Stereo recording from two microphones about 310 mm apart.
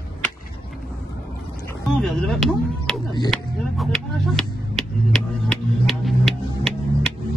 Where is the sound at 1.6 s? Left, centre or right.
Centre.